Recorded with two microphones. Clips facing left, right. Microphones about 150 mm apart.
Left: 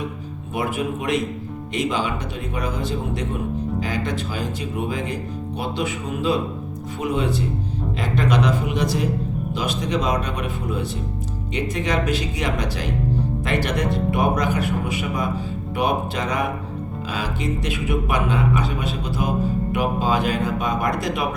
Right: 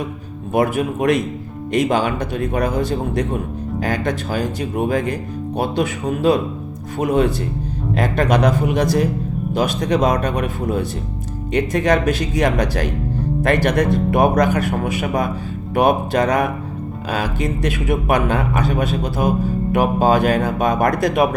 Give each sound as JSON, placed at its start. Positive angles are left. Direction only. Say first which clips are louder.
{"t": 0.5, "sound": "speech", "louder": "right 7 dB", "side_deg": -45}